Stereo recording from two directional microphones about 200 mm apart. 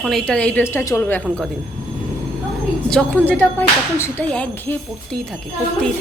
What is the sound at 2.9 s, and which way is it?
Speech, 5° left (ahead or behind).